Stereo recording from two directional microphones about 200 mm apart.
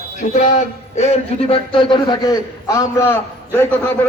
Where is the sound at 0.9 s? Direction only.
30° left (ahead or behind).